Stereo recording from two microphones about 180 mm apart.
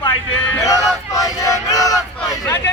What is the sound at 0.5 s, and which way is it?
Speech, 20° left (ahead or behind).